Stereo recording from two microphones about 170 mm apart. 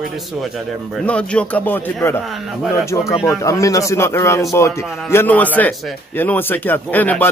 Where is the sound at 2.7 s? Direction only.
15° left (ahead or behind).